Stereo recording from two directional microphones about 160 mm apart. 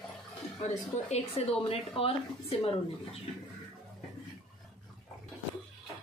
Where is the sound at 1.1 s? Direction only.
40° left (ahead or behind).